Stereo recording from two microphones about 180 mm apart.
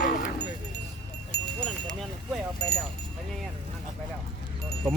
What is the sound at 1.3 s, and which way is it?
Wind chime, 65° left (ahead or behind).